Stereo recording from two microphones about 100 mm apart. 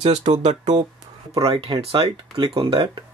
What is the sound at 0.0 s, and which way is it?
Speech, 80° right.